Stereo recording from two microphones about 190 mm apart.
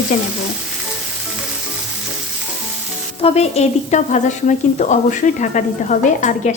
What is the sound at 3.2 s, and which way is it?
Speech, 35° left (ahead or behind).